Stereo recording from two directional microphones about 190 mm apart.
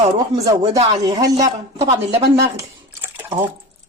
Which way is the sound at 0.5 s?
25° right (ahead or behind).